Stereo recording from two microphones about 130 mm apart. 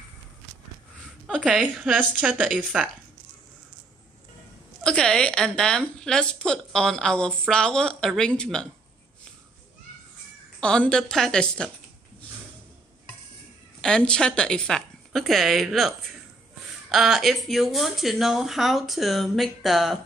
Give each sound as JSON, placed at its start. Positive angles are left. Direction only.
{"t": 1.2, "sound": "speech", "side_deg": -5}
{"t": 4.8, "sound": "a woman's voice", "side_deg": 5}
{"t": 10.6, "sound": "a woman's voice", "side_deg": 5}
{"t": 13.7, "sound": "a woman's voice", "side_deg": 5}
{"t": 16.9, "sound": "a woman's voice", "side_deg": 0}